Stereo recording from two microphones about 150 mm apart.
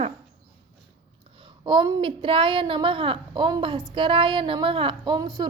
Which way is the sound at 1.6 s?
30° right (ahead or behind).